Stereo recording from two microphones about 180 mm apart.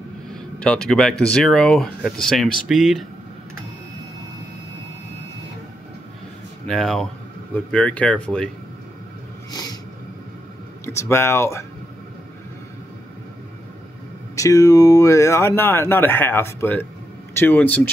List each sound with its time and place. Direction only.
0.3 s speech: 5° left (ahead or behind)
6.7 s speech: centre (ahead or behind)
9.5 s a sound: 20° left (ahead or behind)
10.9 s speech: 15° left (ahead or behind)
14.3 s speech: 20° left (ahead or behind)